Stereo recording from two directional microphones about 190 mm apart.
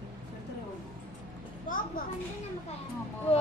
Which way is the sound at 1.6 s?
45° left (ahead or behind).